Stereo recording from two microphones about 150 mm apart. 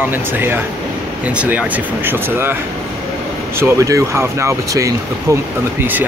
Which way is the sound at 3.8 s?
20° right (ahead or behind).